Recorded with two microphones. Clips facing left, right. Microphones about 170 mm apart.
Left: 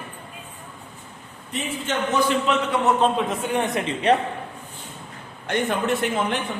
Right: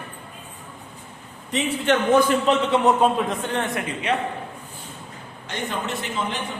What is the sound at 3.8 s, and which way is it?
Speech, 30° left (ahead or behind).